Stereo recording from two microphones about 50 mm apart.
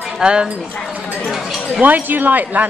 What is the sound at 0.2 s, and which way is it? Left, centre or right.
Speech, centre.